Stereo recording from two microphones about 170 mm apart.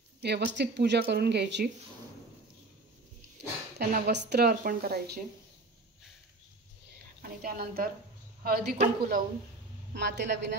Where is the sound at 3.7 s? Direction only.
70° right (ahead or behind).